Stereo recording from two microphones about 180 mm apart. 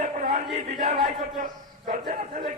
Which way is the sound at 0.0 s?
40° right (ahead or behind).